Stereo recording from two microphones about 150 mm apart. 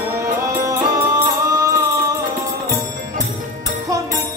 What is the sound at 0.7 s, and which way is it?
Music, 25° right (ahead or behind).